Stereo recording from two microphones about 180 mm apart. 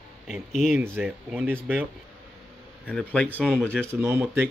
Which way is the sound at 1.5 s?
5° left (ahead or behind).